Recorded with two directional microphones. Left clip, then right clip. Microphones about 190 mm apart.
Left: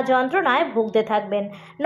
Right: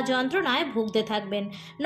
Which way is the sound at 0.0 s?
30° right (ahead or behind).